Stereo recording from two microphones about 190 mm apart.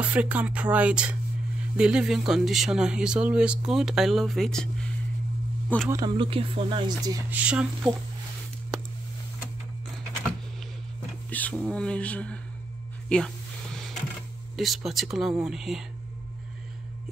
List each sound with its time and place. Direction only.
0.0 s speech: 10° right (ahead or behind)
5.9 s speech: 20° right (ahead or behind)
7.2 s speech: 5° right (ahead or behind)
8.7 s a sound: 5° right (ahead or behind)
11.2 s speech: 10° left (ahead or behind)
13.1 s music: 5° left (ahead or behind)
14.6 s speech: centre (ahead or behind)